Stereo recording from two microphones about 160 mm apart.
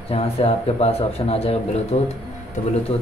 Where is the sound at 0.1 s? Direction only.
40° left (ahead or behind).